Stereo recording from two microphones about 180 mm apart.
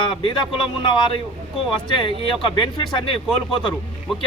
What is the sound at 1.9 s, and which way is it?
A man's voice, 25° left (ahead or behind).